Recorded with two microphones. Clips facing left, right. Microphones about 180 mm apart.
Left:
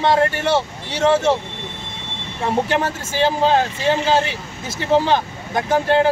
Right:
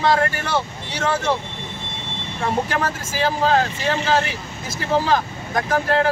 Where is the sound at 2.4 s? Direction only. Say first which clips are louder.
Left 3 dB; 25° left (ahead or behind).